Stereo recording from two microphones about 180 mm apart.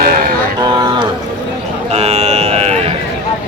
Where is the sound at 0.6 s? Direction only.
20° right (ahead or behind).